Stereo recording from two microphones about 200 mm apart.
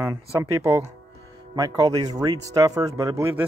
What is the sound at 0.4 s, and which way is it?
Speech, 15° right (ahead or behind).